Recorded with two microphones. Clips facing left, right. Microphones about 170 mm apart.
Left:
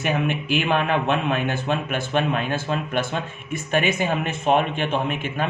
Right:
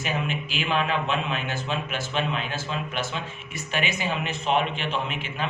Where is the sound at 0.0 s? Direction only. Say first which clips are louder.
Left 5 dB; 60° left (ahead or behind).